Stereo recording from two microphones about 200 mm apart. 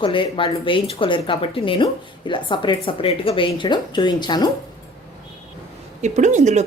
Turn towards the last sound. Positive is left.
turn(degrees=-35)  # may be behind; listen again after turning